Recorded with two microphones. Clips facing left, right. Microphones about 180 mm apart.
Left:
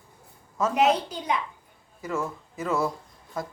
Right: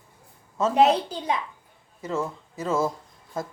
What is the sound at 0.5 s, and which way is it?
Speech, 30° right (ahead or behind).